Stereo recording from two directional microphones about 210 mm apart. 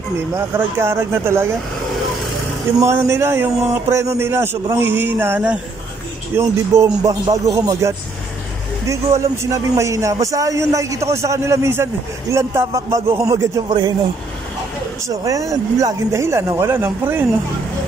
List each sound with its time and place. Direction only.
0.6 s a man's voice: 10° right (ahead or behind)
2.8 s a man's voice: 15° right (ahead or behind)
15.0 s a man's voice: 15° right (ahead or behind)